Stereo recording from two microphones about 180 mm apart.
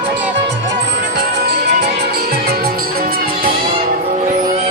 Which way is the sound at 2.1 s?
60° right (ahead or behind).